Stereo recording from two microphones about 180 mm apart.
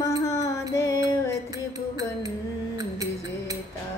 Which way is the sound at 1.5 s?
20° right (ahead or behind).